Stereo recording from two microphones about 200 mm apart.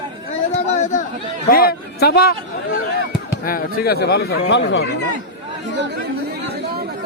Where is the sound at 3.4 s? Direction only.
50° left (ahead or behind); by 4.9 s 65° left (ahead or behind).